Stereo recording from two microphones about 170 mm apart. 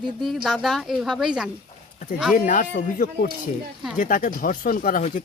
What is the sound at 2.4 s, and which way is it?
Speech, 50° left (ahead or behind).